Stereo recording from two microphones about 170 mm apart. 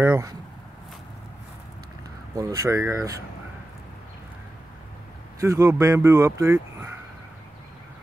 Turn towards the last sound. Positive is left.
turn(degrees=-15)  # may be behind; listen again after turning